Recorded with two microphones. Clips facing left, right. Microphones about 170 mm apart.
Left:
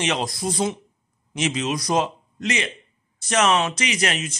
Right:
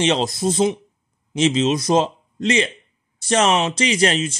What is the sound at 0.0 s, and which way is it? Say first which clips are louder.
A man's voice: right 6 dB; 25° right (ahead or behind).